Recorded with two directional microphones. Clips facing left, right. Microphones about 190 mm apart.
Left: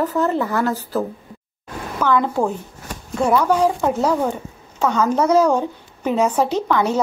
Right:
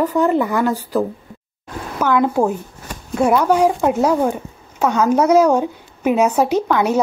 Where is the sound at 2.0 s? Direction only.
10° right (ahead or behind).